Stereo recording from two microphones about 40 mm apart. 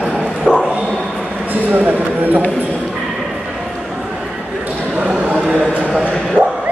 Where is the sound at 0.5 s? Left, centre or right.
Right.